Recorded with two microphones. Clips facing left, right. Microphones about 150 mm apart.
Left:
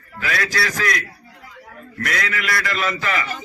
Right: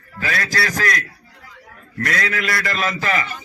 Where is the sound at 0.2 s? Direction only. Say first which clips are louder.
Even; 40° right (ahead or behind).